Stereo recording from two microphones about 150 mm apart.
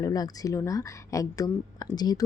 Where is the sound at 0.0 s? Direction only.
25° left (ahead or behind).